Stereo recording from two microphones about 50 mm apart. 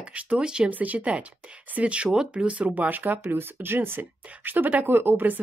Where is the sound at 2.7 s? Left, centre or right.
Right.